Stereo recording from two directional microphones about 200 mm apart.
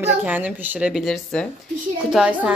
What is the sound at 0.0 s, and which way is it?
Speech, 10° right (ahead or behind).